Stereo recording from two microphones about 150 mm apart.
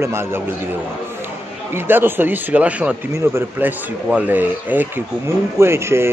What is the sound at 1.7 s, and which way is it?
Speech, 15° right (ahead or behind).